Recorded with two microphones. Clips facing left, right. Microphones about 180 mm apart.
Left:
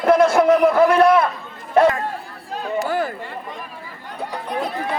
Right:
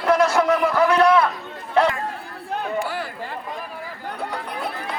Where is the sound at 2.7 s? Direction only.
45° left (ahead or behind).